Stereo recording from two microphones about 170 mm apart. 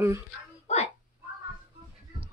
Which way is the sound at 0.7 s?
40° left (ahead or behind).